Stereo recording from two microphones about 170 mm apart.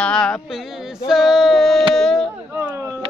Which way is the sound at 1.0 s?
Centre (ahead or behind).